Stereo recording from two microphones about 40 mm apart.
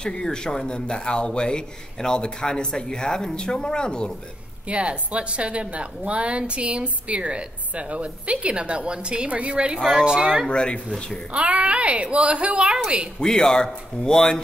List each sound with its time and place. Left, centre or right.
0.0 s speech: centre
4.6 s a woman's voice: right
10.5 s speech: left
11.3 s a woman's voice: right
13.2 s speech: centre